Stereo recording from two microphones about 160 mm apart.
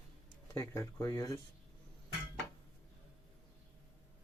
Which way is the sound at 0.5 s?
20° left (ahead or behind).